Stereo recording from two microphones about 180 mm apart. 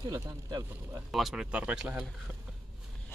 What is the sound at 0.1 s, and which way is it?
Speech, 20° right (ahead or behind).